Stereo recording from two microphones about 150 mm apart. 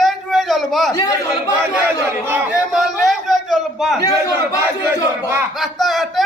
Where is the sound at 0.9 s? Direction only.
25° left (ahead or behind).